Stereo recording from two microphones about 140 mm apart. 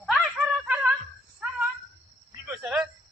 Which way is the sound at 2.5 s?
5° right (ahead or behind).